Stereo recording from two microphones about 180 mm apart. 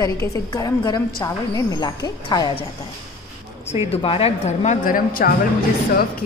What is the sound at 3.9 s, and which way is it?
A man's voice, 35° left (ahead or behind).